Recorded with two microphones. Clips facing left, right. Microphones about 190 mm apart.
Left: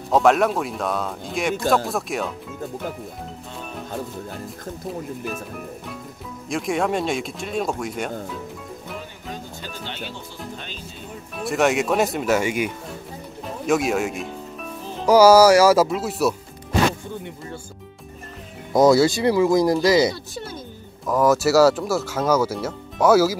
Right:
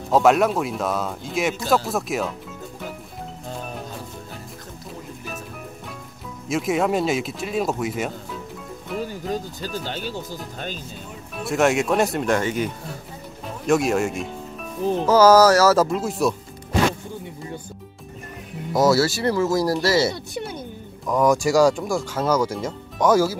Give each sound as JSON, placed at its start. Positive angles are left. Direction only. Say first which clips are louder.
{"t": 0.1, "sound": "speech", "louder": "even", "side_deg": 0}
{"t": 6.5, "sound": "speech", "louder": "right 2 dB", "side_deg": 0}
{"t": 9.0, "sound": "music", "louder": "right 8 dB", "side_deg": -40}
{"t": 9.8, "sound": "speech", "louder": "right 4 dB", "side_deg": -40}
{"t": 11.3, "sound": "speech", "louder": "even", "side_deg": 0}
{"t": 15.0, "sound": "speech", "louder": "left 2 dB", "side_deg": 10}
{"t": 18.7, "sound": "speech", "louder": "left 3 dB", "side_deg": 20}
{"t": 20.3, "sound": "music", "louder": "right 3 dB", "side_deg": -15}
{"t": 21.1, "sound": "speech", "louder": "left 1 dB", "side_deg": 5}